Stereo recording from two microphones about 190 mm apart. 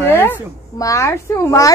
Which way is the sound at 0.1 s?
10° left (ahead or behind).